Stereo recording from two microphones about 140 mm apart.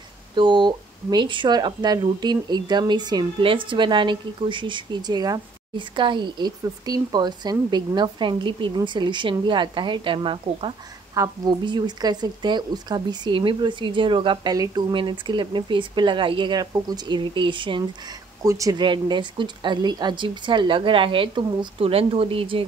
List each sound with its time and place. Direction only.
0.4 s speech: 30° right (ahead or behind)
14.5 s speech: 25° right (ahead or behind)
18.4 s speech: 25° right (ahead or behind); by 22.7 s 40° right (ahead or behind)